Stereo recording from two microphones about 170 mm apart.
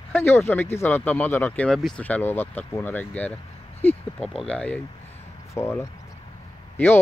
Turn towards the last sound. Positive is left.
turn(degrees=10)  # may be behind; listen again after turning